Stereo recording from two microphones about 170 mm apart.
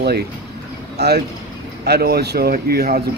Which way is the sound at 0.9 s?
70° right (ahead or behind).